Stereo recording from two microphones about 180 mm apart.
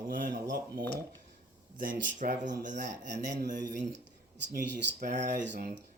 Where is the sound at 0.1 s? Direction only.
55° right (ahead or behind).